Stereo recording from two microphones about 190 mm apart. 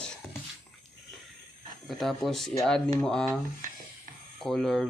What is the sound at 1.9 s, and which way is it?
Speech, centre (ahead or behind).